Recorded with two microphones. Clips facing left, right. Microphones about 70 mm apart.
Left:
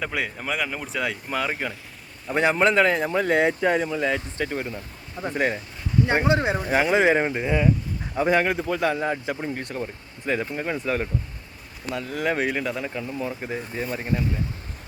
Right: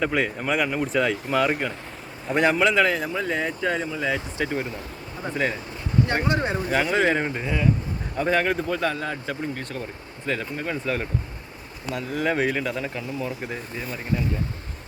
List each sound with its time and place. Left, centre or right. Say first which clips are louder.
0.0 s speech: right 4 dB; centre
2.7 s speech: left 2 dB; centre
3.2 s speech: left 9 dB; left
3.6 s a man's voice: left 3 dB; centre
3.9 s speech: left 1 dB; centre
6.1 s a man's voice: left 6 dB; centre
13.7 s speech: left 2 dB; left